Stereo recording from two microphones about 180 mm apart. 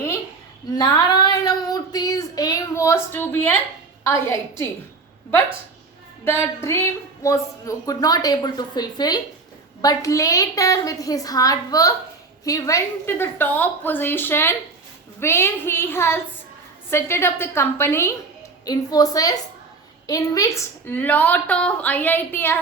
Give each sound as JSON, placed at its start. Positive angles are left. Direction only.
{"t": 0.7, "sound": "child singing", "side_deg": 20}
{"t": 4.0, "sound": "a woman's voice", "side_deg": 15}
{"t": 6.2, "sound": "a woman's voice", "side_deg": 15}